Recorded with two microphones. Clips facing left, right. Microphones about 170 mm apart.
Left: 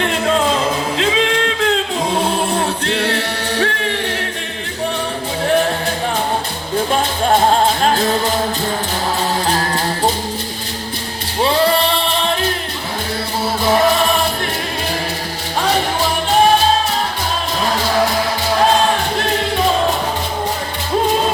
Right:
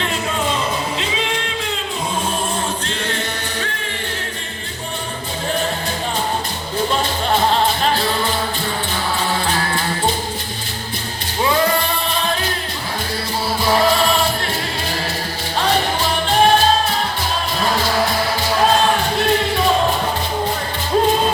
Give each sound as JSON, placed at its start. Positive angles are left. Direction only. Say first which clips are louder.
{"t": 0.3, "sound": "music", "louder": "left 5 dB", "side_deg": 90}
{"t": 9.5, "sound": "music", "louder": "left 3 dB", "side_deg": 40}